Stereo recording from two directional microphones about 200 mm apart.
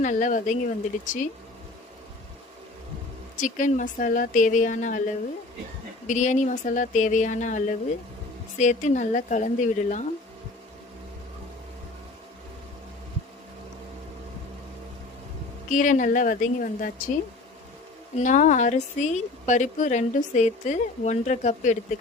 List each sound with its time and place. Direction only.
0.0 s a woman's voice: 40° left (ahead or behind)
3.4 s a woman's voice: 40° left (ahead or behind)
6.1 s a woman's voice: 35° left (ahead or behind)
15.7 s a woman's voice: 40° left (ahead or behind)
18.2 s a woman's voice: 35° left (ahead or behind)